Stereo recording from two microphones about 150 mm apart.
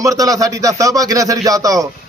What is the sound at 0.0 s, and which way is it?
A man's voice, 25° right (ahead or behind).